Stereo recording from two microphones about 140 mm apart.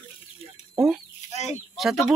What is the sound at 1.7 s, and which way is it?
Speech, centre (ahead or behind).